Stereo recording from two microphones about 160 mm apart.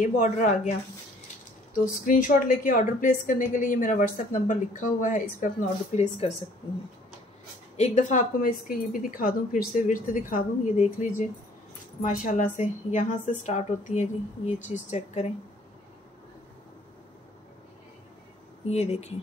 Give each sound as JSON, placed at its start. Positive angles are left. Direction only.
{"t": 0.0, "sound": "a woman's voice", "side_deg": 50}
{"t": 2.0, "sound": "a woman's voice", "side_deg": 60}
{"t": 5.9, "sound": "a woman's voice", "side_deg": 45}
{"t": 7.7, "sound": "a woman's voice", "side_deg": 45}
{"t": 18.7, "sound": "a woman's voice", "side_deg": 40}